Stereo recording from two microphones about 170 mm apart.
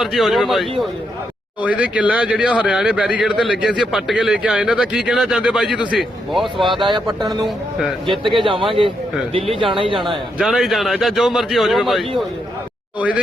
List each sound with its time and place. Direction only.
0.0 s speech: centre (ahead or behind)
6.7 s speech: 25° right (ahead or behind)
10.0 s speech: centre (ahead or behind)